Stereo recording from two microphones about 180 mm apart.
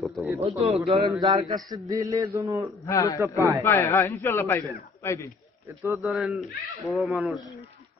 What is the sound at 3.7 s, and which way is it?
A man's voice, 15° left (ahead or behind).